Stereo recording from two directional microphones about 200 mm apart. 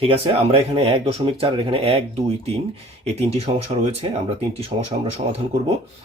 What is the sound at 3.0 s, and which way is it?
Speech, 30° right (ahead or behind).